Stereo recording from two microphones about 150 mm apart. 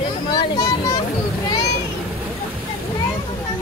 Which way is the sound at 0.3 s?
25° left (ahead or behind).